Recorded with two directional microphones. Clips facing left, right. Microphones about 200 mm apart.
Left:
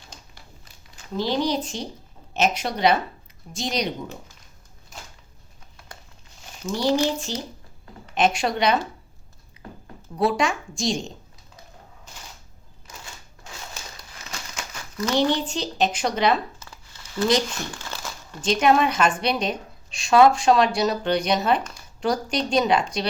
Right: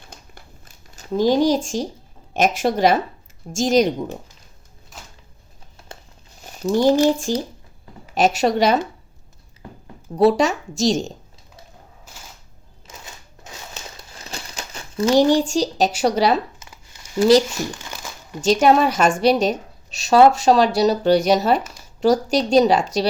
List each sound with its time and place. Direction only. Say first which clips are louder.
0.1 s crumpling: right 2 dB; 55° right (ahead or behind)
1.1 s speech: right 7 dB; 45° right (ahead or behind)
6.7 s a woman's voice: right 7 dB; 45° right (ahead or behind)
10.2 s a woman's voice: right 7 dB; 35° right (ahead or behind)
12.9 s typewriter: right 2 dB; 25° right (ahead or behind)
13.9 s crumpling: right 4 dB; 30° right (ahead or behind)
16.0 s a woman's voice: right 5 dB; 40° right (ahead or behind)
16.6 s a sound: even; 15° right (ahead or behind)
17.7 s crumpling: even; 15° right (ahead or behind)
18.4 s a woman's voice: right 4 dB; 35° right (ahead or behind)